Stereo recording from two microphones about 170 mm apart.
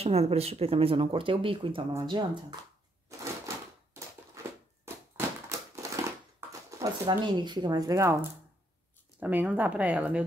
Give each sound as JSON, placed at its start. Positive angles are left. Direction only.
{"t": 0.0, "sound": "speech", "side_deg": -35}
{"t": 4.4, "sound": "a sound", "side_deg": -15}
{"t": 6.8, "sound": "speech", "side_deg": -25}